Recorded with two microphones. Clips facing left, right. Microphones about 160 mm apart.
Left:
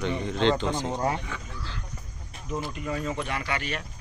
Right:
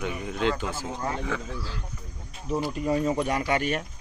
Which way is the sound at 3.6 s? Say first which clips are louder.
Right 6 dB; 45° right (ahead or behind).